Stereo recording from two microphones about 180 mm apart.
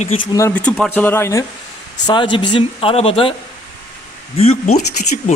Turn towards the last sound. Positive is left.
turn(degrees=40)  # may be behind; listen again after turning